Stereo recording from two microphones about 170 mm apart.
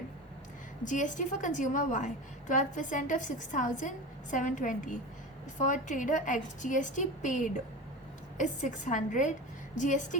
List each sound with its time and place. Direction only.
0.9 s a woman's voice: 45° left (ahead or behind)